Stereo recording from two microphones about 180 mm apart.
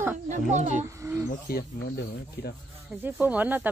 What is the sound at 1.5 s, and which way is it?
Speech, 60° left (ahead or behind).